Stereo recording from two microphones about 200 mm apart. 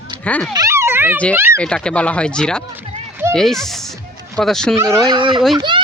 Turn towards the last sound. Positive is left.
turn(degrees=-25)  # may be behind; listen again after turning